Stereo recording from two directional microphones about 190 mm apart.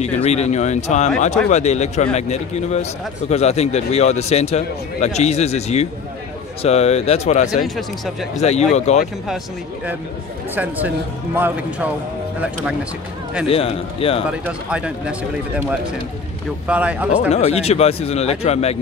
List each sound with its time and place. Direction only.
0.0 s speech: 35° left (ahead or behind)
7.6 s speech: centre (ahead or behind)
8.4 s speech: 35° left (ahead or behind)
10.5 s speech: 10° right (ahead or behind)
13.5 s speech: 30° left (ahead or behind)
14.4 s speech: 5° right (ahead or behind)
17.3 s speech: 35° left (ahead or behind)